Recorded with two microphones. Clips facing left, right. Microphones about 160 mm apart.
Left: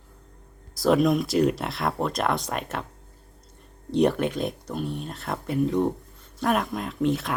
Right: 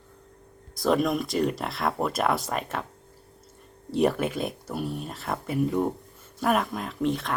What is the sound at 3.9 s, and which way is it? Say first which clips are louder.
Speech: left 2 dB; 5° right (ahead or behind).